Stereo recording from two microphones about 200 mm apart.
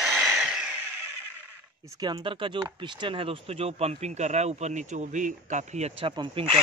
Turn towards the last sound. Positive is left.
turn(degrees=-25)  # may be behind; listen again after turning